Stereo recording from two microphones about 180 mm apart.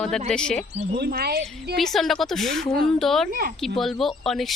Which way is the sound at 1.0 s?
60° right (ahead or behind).